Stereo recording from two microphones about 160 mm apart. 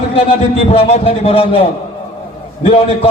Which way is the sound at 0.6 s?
40° left (ahead or behind).